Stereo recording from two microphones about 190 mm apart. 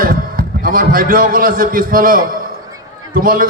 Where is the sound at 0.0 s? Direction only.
50° right (ahead or behind).